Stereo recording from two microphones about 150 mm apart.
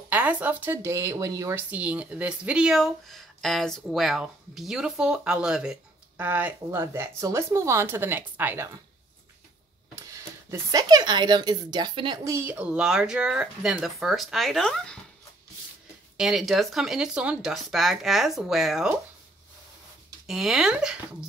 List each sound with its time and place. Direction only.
0.1 s speech: 10° right (ahead or behind)
1.7 s speech: 10° right (ahead or behind)
9.9 s speech: 20° right (ahead or behind)
12.3 s speech: 15° right (ahead or behind); by 15.0 s 5° left (ahead or behind)
16.2 s speech: centre (ahead or behind)
20.2 s speech: 5° right (ahead or behind)